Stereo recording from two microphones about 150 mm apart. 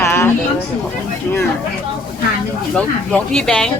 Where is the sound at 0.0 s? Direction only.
20° left (ahead or behind).